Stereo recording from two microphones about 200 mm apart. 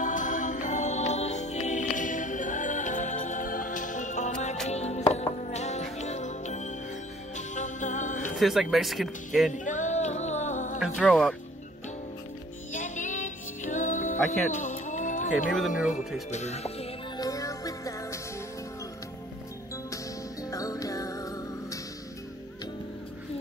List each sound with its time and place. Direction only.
0.0 s music: 40° left (ahead or behind)
8.4 s speech: centre (ahead or behind)
9.5 s music: 40° left (ahead or behind)
11.0 s speech: centre (ahead or behind)
12.7 s music: 40° left (ahead or behind)
16.3 s speech: 35° left (ahead or behind)
17.2 s music: 15° left (ahead or behind)
20.5 s music: 15° left (ahead or behind)